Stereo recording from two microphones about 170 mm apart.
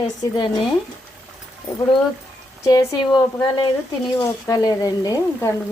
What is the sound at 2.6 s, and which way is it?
Speech, 20° left (ahead or behind).